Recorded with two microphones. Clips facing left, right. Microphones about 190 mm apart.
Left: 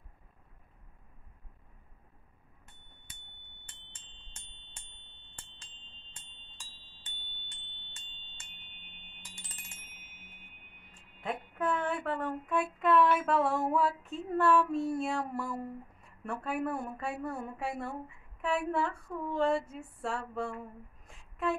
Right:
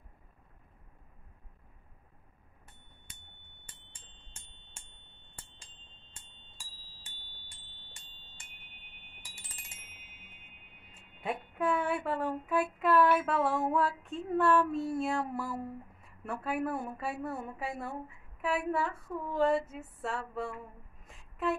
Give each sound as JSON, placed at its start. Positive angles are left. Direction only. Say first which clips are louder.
{"t": 6.6, "sound": "bell", "louder": "even", "side_deg": -10}
{"t": 7.3, "sound": "bell", "louder": "left 1 dB", "side_deg": 25}
{"t": 8.1, "sound": "music", "louder": "even", "side_deg": 25}
{"t": 8.9, "sound": "chime", "louder": "left 3 dB", "side_deg": -5}
{"t": 11.0, "sound": "speech", "louder": "right 1 dB", "side_deg": -10}
{"t": 21.1, "sound": "a sound", "louder": "even", "side_deg": 0}